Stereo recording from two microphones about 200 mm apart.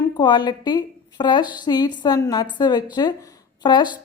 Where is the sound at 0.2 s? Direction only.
20° left (ahead or behind).